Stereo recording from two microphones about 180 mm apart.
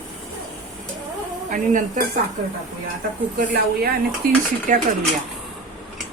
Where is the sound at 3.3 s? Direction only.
60° right (ahead or behind).